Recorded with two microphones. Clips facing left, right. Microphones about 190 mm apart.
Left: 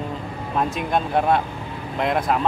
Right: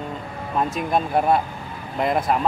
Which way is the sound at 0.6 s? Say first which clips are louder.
Even; centre (ahead or behind).